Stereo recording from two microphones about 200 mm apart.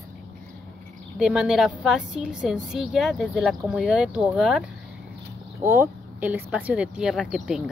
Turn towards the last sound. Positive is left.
turn(degrees=-5)  # may be behind; listen again after turning